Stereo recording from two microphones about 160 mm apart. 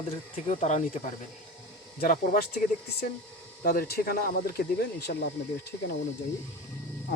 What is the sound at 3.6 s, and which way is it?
Speech, 70° left (ahead or behind).